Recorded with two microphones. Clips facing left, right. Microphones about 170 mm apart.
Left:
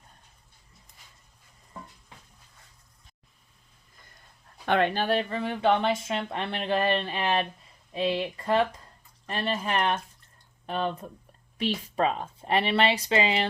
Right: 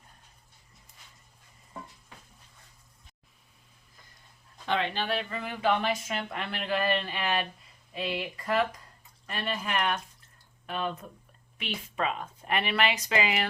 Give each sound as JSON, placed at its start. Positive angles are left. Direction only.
{"t": 4.6, "sound": "speech", "side_deg": 55}
{"t": 11.9, "sound": "speech", "side_deg": 35}